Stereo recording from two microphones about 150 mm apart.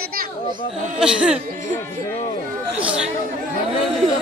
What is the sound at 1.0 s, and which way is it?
Speech, 5° right (ahead or behind).